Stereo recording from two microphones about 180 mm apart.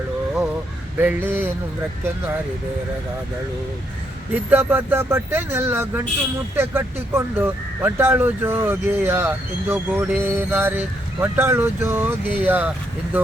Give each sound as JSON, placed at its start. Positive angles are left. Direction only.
{"t": 0.9, "sound": "speech", "side_deg": -10}
{"t": 4.4, "sound": "speech", "side_deg": -10}